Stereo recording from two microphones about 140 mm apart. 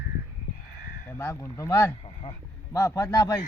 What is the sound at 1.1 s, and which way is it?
Speech, 20° left (ahead or behind).